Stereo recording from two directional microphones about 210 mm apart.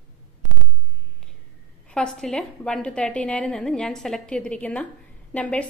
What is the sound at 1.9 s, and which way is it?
A woman's voice, 5° left (ahead or behind).